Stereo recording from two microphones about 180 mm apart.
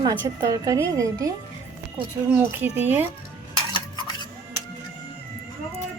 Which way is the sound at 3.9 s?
25° left (ahead or behind).